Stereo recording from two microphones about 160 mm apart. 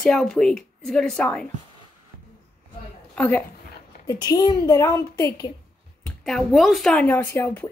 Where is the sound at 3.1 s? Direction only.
10° left (ahead or behind).